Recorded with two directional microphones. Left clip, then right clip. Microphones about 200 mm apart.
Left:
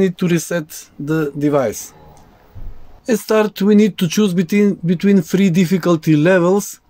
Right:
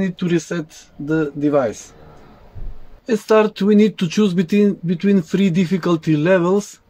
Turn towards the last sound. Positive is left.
turn(degrees=40)  # may be behind; listen again after turning